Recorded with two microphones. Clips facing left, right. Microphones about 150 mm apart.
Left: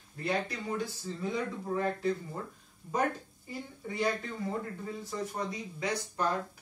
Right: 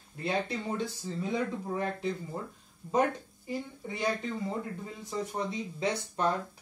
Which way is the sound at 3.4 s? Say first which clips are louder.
Right 4 dB; 20° right (ahead or behind).